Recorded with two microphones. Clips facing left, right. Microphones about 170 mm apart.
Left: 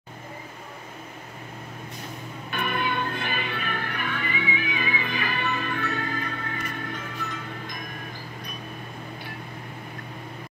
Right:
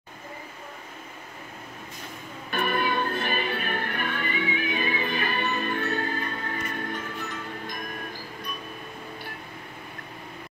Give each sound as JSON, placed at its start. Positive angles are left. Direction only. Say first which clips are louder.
{"t": 2.5, "sound": "music", "louder": "right 2 dB", "side_deg": -40}